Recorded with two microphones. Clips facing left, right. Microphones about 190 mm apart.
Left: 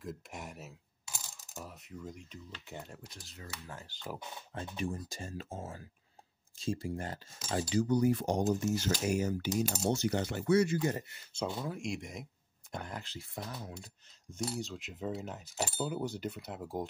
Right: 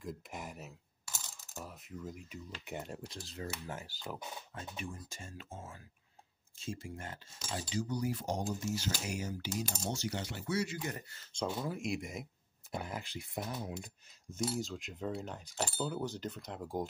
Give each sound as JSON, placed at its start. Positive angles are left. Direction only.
{"t": 0.0, "sound": "speech", "side_deg": 0}
{"t": 1.5, "sound": "coin", "side_deg": 0}
{"t": 2.6, "sound": "speech", "side_deg": -20}
{"t": 3.1, "sound": "speech", "side_deg": -30}
{"t": 3.8, "sound": "speech", "side_deg": -5}
{"t": 4.6, "sound": "speech", "side_deg": 35}
{"t": 7.5, "sound": "speech", "side_deg": 55}
{"t": 10.8, "sound": "speech", "side_deg": 30}
{"t": 11.4, "sound": "speech", "side_deg": -5}
{"t": 14.4, "sound": "speech", "side_deg": 0}